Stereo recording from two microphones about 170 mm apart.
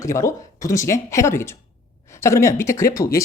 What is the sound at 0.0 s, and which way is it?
Speech, 15° left (ahead or behind).